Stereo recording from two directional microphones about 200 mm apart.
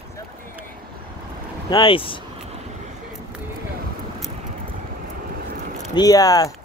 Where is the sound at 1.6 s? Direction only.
25° left (ahead or behind).